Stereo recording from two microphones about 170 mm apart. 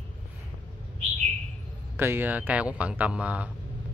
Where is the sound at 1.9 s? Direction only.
15° right (ahead or behind).